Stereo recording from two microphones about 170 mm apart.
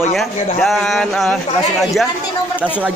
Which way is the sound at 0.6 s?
Centre (ahead or behind).